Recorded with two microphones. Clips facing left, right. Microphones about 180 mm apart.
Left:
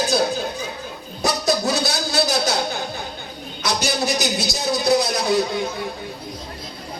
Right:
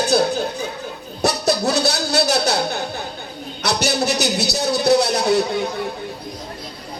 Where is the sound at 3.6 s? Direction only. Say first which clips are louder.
Right 2 dB; 70° right (ahead or behind).